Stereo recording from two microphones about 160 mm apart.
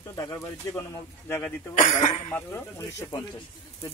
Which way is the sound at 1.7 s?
45° left (ahead or behind).